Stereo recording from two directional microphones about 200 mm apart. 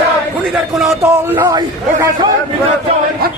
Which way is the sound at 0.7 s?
Centre (ahead or behind).